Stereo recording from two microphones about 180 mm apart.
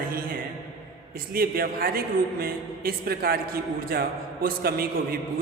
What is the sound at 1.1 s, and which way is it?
A man's voice, 55° right (ahead or behind).